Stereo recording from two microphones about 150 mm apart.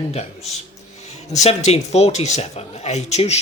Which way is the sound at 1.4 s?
45° left (ahead or behind).